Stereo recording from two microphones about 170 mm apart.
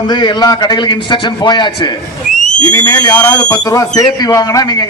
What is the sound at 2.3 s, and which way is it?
Whistle, 45° left (ahead or behind).